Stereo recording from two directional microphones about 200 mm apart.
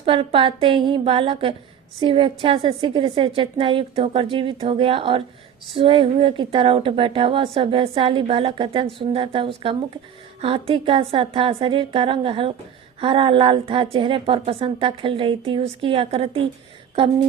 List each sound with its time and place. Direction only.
0.0 s a woman's voice: 30° right (ahead or behind)